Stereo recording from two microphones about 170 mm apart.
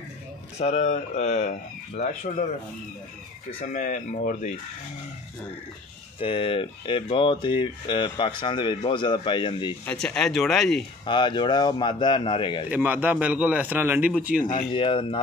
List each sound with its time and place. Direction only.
0.6 s speech: 40° left (ahead or behind)
3.6 s speech: 50° left (ahead or behind)
6.1 s speech: 30° left (ahead or behind)
9.8 s speech: 5° left (ahead or behind)
11.1 s speech: 25° left (ahead or behind)
12.6 s a man's voice: 10° right (ahead or behind)
14.5 s speech: 30° left (ahead or behind)